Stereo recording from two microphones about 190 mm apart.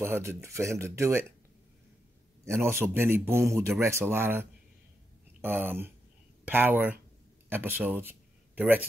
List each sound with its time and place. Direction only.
0.0 s a man's voice: 15° right (ahead or behind)
2.4 s a man's voice: 15° right (ahead or behind)